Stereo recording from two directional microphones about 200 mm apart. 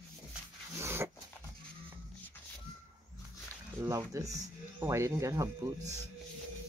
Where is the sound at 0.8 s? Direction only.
10° right (ahead or behind).